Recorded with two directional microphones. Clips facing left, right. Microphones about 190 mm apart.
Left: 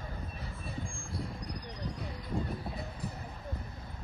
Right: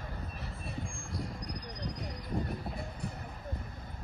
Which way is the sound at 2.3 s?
10° left (ahead or behind).